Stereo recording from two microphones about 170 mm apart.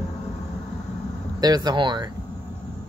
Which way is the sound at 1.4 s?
25° right (ahead or behind).